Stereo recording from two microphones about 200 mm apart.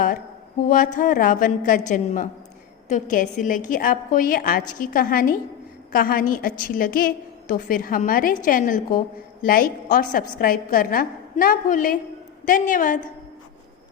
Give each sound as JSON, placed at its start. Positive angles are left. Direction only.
{"t": 0.7, "sound": "a woman's voice", "side_deg": 40}